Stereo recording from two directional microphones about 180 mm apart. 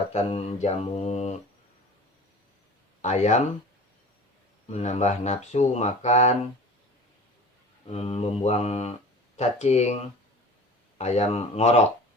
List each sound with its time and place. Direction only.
0.1 s speech: 35° left (ahead or behind)
3.0 s speech: 40° left (ahead or behind)
4.7 s speech: 40° left (ahead or behind)
7.9 s speech: 35° left (ahead or behind)